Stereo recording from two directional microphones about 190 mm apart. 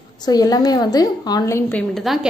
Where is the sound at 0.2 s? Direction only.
20° left (ahead or behind).